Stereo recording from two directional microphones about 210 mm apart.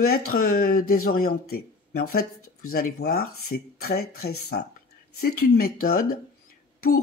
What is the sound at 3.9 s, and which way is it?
Speech, 50° left (ahead or behind).